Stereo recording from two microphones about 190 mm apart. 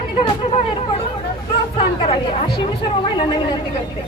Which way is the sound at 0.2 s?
25° left (ahead or behind).